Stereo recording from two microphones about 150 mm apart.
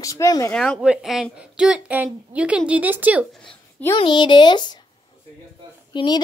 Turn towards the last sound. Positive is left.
turn(degrees=30)  # may be behind; listen again after turning